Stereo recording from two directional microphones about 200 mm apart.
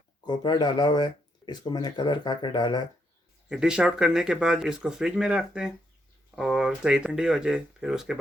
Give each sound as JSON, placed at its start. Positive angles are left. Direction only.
{"t": 0.3, "sound": "speech", "side_deg": 20}
{"t": 3.5, "sound": "speech", "side_deg": -5}